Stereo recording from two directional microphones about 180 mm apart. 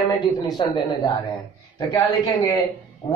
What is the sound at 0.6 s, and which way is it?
Speech, 25° left (ahead or behind).